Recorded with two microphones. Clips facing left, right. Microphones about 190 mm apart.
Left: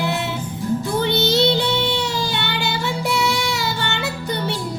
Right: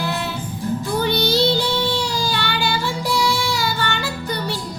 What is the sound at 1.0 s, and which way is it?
Child singing, 25° left (ahead or behind).